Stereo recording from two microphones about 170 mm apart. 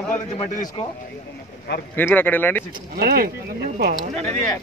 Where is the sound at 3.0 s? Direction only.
70° right (ahead or behind).